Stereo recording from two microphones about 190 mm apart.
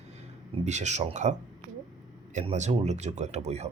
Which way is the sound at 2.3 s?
40° right (ahead or behind).